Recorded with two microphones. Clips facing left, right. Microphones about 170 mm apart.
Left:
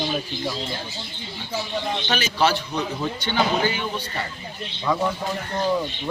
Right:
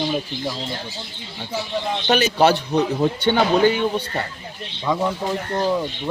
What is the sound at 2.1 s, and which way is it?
A man's voice, 55° right (ahead or behind).